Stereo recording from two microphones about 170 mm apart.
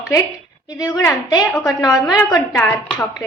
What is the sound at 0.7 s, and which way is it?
Speech, 20° left (ahead or behind).